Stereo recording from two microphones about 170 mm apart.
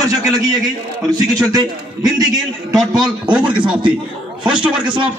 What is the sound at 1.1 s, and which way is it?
Speech, 20° right (ahead or behind).